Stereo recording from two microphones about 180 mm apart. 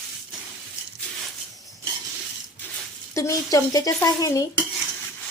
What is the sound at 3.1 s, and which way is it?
Speech, 20° left (ahead or behind).